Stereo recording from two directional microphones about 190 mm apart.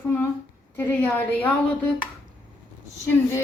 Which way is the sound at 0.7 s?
10° left (ahead or behind).